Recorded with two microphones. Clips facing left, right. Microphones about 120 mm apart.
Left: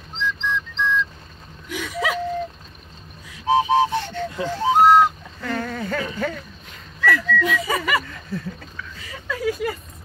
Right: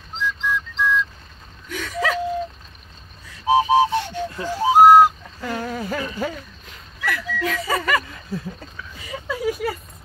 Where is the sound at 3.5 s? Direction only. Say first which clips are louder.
Right 1 dB; 10° right (ahead or behind).